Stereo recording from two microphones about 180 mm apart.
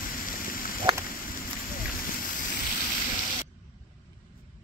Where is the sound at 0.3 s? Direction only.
50° left (ahead or behind).